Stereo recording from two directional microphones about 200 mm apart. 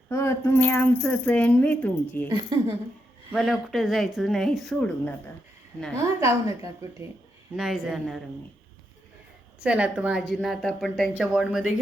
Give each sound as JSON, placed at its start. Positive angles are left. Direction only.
{"t": 0.1, "sound": "speech", "side_deg": 15}
{"t": 2.3, "sound": "speech", "side_deg": -20}
{"t": 3.3, "sound": "a woman's voice", "side_deg": 0}
{"t": 6.1, "sound": "a woman's voice", "side_deg": -15}
{"t": 7.5, "sound": "a woman's voice", "side_deg": 0}
{"t": 9.6, "sound": "a woman's voice", "side_deg": -5}